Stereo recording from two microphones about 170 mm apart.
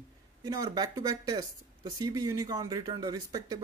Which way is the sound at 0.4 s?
20° right (ahead or behind).